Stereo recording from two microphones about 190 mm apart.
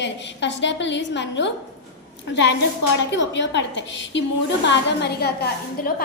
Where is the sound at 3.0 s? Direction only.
70° left (ahead or behind).